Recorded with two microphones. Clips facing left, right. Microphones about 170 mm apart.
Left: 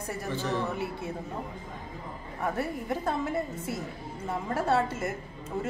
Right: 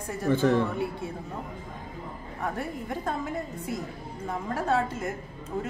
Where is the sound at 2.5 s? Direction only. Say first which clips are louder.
Left 2 dB; 5° left (ahead or behind).